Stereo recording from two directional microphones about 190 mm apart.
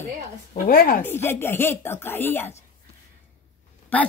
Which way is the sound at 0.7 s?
50° left (ahead or behind).